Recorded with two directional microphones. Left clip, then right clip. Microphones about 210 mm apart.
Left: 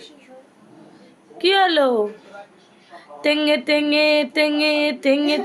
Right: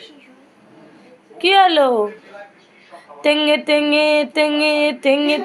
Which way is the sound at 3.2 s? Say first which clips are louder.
Right 3 dB; 10° left (ahead or behind).